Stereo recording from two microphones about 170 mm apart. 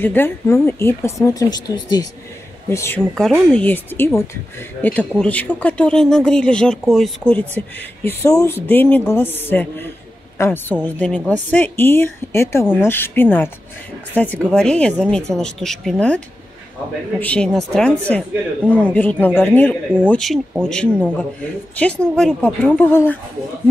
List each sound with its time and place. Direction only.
0.0 s speech: 10° left (ahead or behind)
3.2 s speech: 5° left (ahead or behind)
17.2 s speech: 5° left (ahead or behind)